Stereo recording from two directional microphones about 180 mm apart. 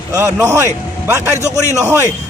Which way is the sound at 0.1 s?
15° right (ahead or behind).